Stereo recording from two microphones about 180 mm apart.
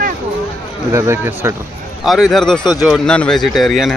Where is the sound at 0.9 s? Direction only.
15° right (ahead or behind).